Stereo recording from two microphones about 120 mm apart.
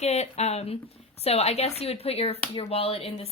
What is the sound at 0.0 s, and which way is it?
Speech, 65° left (ahead or behind).